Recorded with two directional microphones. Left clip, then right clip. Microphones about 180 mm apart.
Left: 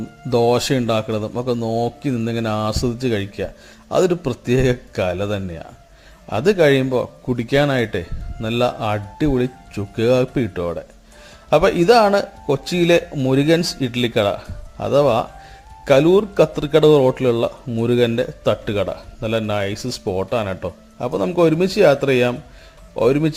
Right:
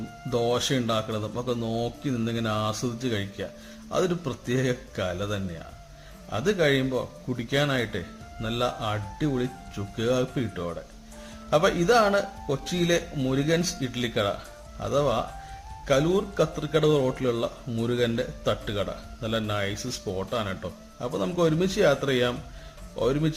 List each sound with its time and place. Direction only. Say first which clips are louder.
0.3 s speech: left 9 dB; 35° left (ahead or behind)